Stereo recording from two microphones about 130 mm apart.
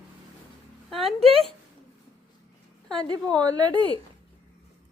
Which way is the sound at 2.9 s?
40° right (ahead or behind).